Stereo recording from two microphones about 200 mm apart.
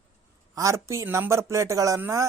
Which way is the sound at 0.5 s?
15° right (ahead or behind).